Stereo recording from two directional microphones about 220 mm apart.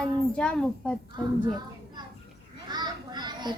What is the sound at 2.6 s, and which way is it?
Children playing, 20° right (ahead or behind).